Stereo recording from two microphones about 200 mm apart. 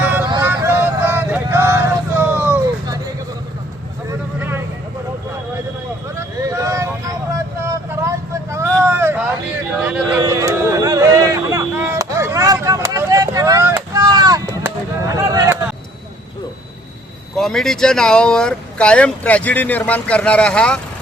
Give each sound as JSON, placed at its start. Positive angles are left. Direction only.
{"t": 0.0, "sound": "vehicle", "side_deg": -10}
{"t": 4.4, "sound": "vehicle", "side_deg": -10}
{"t": 6.1, "sound": "vehicle", "side_deg": -15}
{"t": 9.8, "sound": "a sound", "side_deg": -5}
{"t": 10.2, "sound": "a sound", "side_deg": -15}
{"t": 17.3, "sound": "speech", "side_deg": 0}